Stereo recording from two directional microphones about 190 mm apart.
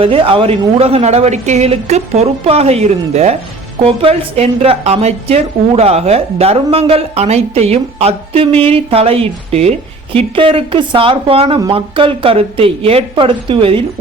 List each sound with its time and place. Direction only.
0.0 s a woman's voice: 30° right (ahead or behind)